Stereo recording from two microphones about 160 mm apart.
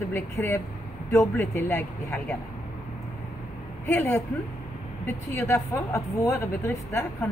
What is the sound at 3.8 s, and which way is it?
A woman's voice, 15° left (ahead or behind).